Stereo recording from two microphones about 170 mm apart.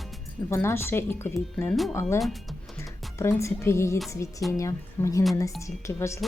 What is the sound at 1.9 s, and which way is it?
Speech, 15° left (ahead or behind).